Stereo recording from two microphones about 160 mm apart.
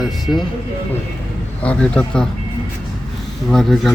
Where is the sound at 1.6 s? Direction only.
10° left (ahead or behind).